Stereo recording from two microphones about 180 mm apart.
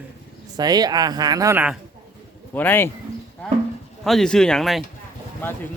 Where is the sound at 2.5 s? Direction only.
10° left (ahead or behind).